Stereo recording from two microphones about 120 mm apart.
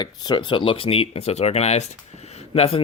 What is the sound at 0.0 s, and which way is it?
Speech, 40° left (ahead or behind).